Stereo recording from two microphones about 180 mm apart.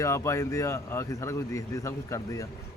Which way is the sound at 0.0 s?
15° left (ahead or behind).